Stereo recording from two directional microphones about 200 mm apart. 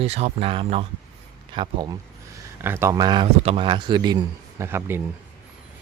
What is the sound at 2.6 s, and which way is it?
A man's voice, 10° right (ahead or behind).